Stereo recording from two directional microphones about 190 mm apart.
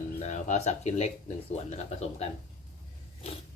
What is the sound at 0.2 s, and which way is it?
Speech, 40° left (ahead or behind).